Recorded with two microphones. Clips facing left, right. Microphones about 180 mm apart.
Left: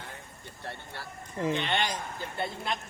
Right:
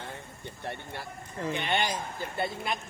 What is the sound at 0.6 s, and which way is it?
Speech, 20° right (ahead or behind).